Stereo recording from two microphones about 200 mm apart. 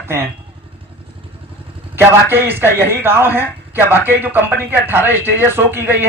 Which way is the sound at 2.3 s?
10° right (ahead or behind).